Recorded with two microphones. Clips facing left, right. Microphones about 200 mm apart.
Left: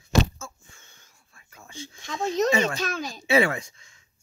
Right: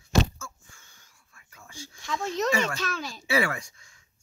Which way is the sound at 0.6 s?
25° left (ahead or behind).